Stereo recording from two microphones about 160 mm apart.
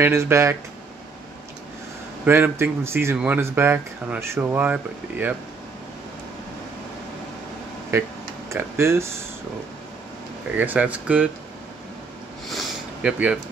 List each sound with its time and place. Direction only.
0.0 s speech: 15° right (ahead or behind)
2.2 s speech: 15° right (ahead or behind)
7.9 s speech: 15° right (ahead or behind)
10.6 s speech: 10° right (ahead or behind)
12.4 s a sound: centre (ahead or behind)